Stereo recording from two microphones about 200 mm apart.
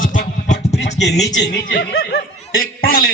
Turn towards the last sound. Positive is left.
turn(degrees=45)  # may be behind; listen again after turning